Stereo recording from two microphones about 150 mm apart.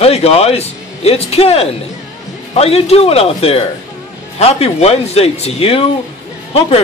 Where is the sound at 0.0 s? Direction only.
45° left (ahead or behind).